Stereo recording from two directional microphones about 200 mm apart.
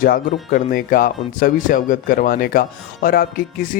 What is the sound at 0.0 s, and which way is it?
Speech, 45° left (ahead or behind).